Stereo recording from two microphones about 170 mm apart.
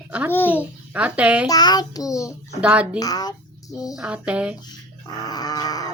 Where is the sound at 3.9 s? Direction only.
5° right (ahead or behind).